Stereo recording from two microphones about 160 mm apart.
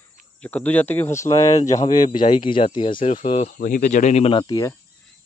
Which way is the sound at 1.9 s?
50° left (ahead or behind).